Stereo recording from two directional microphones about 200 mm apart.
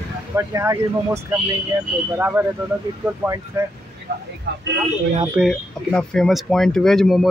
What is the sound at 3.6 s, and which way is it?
Speech, 10° right (ahead or behind).